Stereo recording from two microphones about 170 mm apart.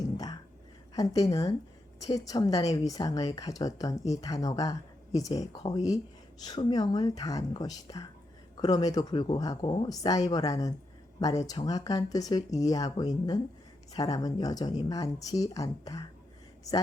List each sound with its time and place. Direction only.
0.9 s a woman's voice: 20° left (ahead or behind)